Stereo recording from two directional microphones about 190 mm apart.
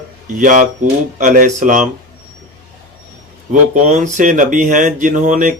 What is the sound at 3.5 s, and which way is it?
Speech, 40° right (ahead or behind).